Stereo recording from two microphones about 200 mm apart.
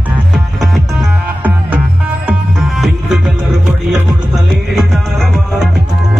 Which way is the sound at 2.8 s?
Centre (ahead or behind).